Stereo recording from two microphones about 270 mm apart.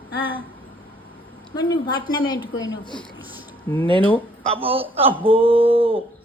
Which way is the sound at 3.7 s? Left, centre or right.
Centre.